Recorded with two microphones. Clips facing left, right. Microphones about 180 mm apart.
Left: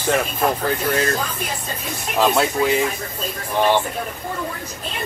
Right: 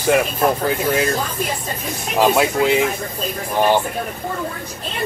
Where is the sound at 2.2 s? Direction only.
15° right (ahead or behind).